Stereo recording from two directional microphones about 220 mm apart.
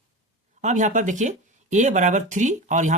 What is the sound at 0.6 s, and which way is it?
Speech, 35° right (ahead or behind).